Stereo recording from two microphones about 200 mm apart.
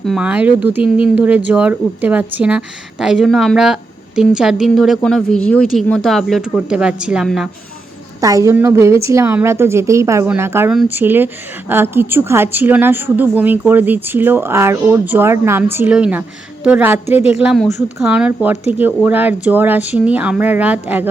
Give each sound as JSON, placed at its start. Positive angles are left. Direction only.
{"t": 0.0, "sound": "a woman's voice", "side_deg": 0}
{"t": 8.2, "sound": "a woman's voice", "side_deg": -15}